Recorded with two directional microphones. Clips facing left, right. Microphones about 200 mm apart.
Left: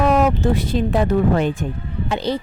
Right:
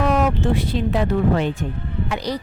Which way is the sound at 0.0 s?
40° left (ahead or behind).